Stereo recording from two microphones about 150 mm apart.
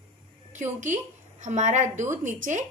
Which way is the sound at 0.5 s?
55° right (ahead or behind).